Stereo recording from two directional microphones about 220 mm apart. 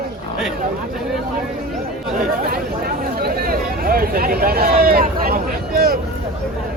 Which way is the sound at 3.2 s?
45° right (ahead or behind).